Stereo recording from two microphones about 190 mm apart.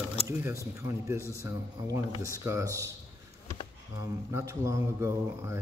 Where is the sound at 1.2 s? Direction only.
15° left (ahead or behind).